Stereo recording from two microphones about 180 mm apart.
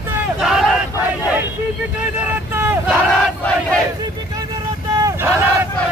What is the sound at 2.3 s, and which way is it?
Vehicle, 10° right (ahead or behind).